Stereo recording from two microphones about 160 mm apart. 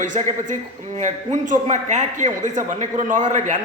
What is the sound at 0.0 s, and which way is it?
A man's voice, 50° right (ahead or behind).